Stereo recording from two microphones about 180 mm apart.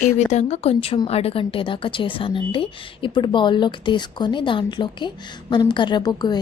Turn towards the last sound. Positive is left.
turn(degrees=25)  # may be behind; listen again after turning